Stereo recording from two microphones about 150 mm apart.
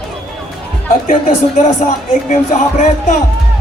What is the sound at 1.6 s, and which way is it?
Music, 55° left (ahead or behind).